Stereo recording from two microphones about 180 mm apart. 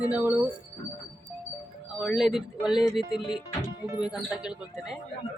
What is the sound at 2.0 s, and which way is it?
Speech, centre (ahead or behind).